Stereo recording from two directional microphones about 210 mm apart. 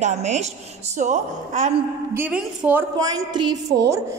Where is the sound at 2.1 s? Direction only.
5° right (ahead or behind).